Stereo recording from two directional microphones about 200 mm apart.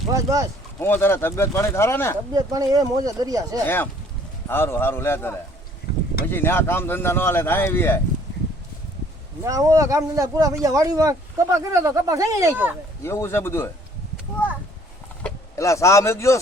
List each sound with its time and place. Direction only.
0.1 s speech: 15° right (ahead or behind)
0.8 s speech: 10° left (ahead or behind)
2.3 s speech: 20° right (ahead or behind)
4.4 s speech: 10° left (ahead or behind)
6.3 s speech: 10° left (ahead or behind)
9.4 s speech: 15° right (ahead or behind)
13.0 s speech: 15° left (ahead or behind)
15.2 s speech: 15° left (ahead or behind)